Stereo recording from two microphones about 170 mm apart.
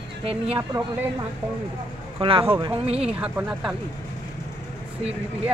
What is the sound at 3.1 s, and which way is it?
Speech, 5° right (ahead or behind).